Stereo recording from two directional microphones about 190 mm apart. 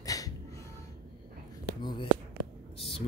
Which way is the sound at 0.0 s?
20° left (ahead or behind).